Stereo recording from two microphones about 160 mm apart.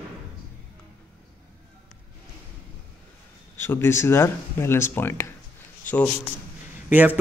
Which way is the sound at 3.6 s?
15° left (ahead or behind).